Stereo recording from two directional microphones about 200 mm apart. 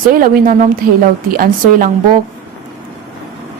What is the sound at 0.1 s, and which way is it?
A woman's voice, 45° right (ahead or behind).